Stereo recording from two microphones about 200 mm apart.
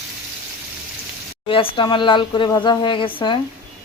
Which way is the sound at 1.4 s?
25° left (ahead or behind).